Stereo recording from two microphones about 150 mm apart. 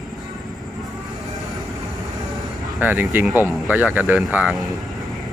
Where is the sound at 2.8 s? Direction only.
10° right (ahead or behind).